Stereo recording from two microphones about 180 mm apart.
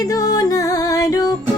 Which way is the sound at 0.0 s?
20° left (ahead or behind).